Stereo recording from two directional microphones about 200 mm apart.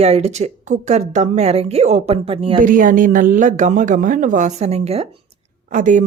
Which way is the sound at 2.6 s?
45° right (ahead or behind).